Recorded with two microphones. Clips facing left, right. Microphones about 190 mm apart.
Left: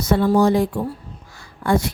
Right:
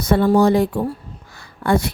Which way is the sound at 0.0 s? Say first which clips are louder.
Right 2 dB; 60° right (ahead or behind).